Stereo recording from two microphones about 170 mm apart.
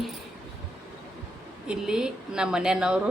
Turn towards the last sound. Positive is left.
turn(degrees=-5)  # may be behind; listen again after turning